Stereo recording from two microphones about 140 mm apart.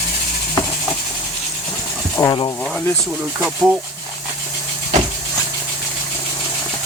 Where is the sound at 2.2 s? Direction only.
20° left (ahead or behind).